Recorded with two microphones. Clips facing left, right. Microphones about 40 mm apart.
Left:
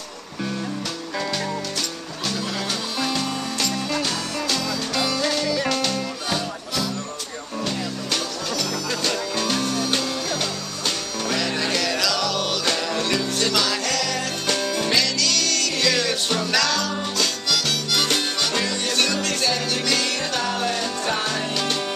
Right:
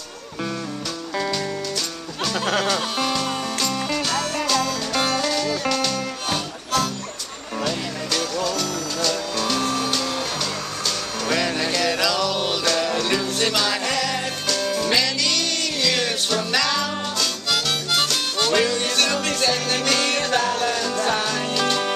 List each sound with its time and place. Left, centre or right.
3.6 s music: centre
5.2 s music: centre
9.0 s music: centre
9.6 s music: right
11.5 s music: centre
11.8 s music: centre
15.9 s music: right
16.5 s music: centre
17.5 s harmonica: right
18.4 s music: right
19.5 s music: right
20.6 s music: centre